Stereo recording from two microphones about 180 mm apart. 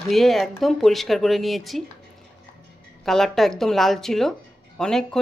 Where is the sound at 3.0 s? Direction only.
Centre (ahead or behind).